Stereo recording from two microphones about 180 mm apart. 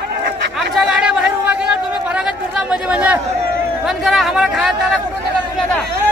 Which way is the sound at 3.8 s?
Centre (ahead or behind).